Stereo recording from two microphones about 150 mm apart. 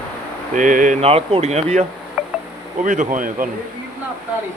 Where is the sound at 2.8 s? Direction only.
60° right (ahead or behind).